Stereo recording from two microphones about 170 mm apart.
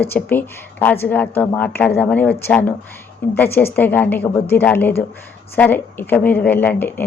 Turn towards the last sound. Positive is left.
turn(degrees=10)  # may be behind; listen again after turning